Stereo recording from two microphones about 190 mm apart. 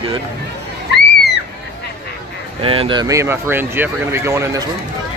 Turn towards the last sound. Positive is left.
turn(degrees=-15)  # may be behind; listen again after turning